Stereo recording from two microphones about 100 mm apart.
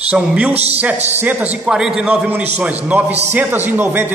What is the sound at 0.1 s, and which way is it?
Speech, 10° right (ahead or behind).